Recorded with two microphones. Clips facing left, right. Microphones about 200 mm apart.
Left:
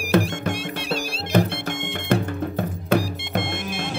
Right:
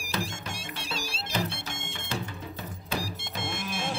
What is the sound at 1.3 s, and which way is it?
Music, 55° left (ahead or behind).